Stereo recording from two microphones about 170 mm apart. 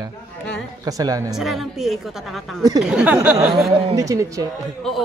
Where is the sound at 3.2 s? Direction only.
15° right (ahead or behind).